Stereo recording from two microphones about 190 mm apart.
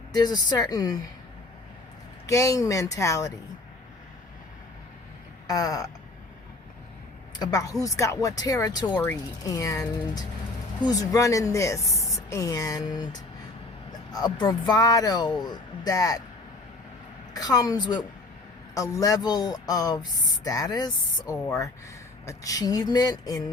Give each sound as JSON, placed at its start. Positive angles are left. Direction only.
{"t": 0.1, "sound": "speech", "side_deg": 20}
{"t": 2.2, "sound": "speech", "side_deg": 15}
{"t": 5.5, "sound": "speech", "side_deg": 20}
{"t": 7.3, "sound": "speech", "side_deg": 20}
{"t": 17.3, "sound": "speech", "side_deg": 20}